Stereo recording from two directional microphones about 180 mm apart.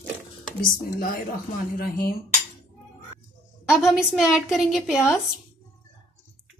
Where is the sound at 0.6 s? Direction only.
55° left (ahead or behind).